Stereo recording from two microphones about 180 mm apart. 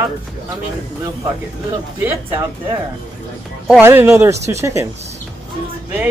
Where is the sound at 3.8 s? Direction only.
10° right (ahead or behind).